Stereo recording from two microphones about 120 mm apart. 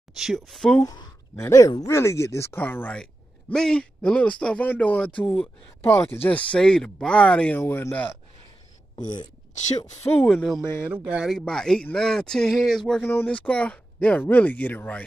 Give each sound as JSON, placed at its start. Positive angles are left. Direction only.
{"t": 0.2, "sound": "speech", "side_deg": 0}
{"t": 0.8, "sound": "speech", "side_deg": 25}
{"t": 10.2, "sound": "speech", "side_deg": 0}
{"t": 10.9, "sound": "speech", "side_deg": -10}
{"t": 11.3, "sound": "speech", "side_deg": 5}
{"t": 13.0, "sound": "speech", "side_deg": 15}